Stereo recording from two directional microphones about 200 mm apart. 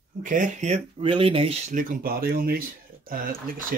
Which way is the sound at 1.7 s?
40° right (ahead or behind).